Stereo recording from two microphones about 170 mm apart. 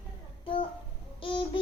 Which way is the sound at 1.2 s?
30° left (ahead or behind).